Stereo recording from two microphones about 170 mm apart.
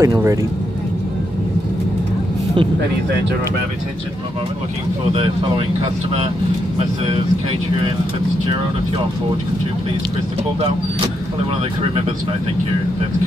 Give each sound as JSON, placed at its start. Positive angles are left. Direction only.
{"t": 0.0, "sound": "speech", "side_deg": -20}